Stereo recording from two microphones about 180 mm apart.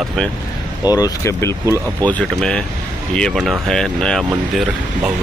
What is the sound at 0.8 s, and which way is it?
Speech, 20° left (ahead or behind).